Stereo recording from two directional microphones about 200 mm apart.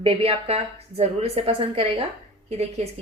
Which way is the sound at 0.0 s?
30° right (ahead or behind).